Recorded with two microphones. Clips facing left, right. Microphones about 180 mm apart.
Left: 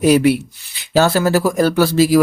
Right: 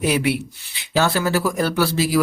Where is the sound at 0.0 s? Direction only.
40° left (ahead or behind).